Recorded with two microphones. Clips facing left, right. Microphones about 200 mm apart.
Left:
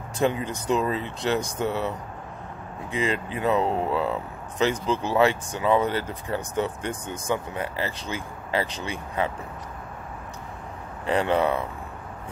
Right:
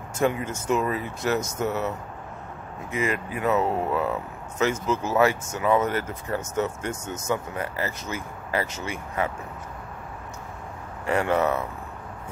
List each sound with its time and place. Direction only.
0.2 s speech: 25° left (ahead or behind)
2.9 s speech: 30° left (ahead or behind)
11.1 s speech: 20° left (ahead or behind)